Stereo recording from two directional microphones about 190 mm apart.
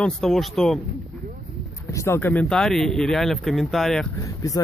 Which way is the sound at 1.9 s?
15° left (ahead or behind).